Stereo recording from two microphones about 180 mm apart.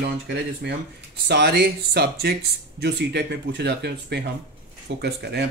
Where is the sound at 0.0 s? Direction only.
65° right (ahead or behind).